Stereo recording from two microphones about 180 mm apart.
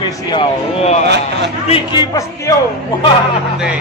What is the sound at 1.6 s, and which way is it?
Speech, 30° left (ahead or behind).